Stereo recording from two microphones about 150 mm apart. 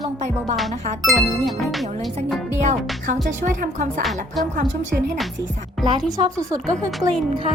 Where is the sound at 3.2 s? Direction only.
60° right (ahead or behind).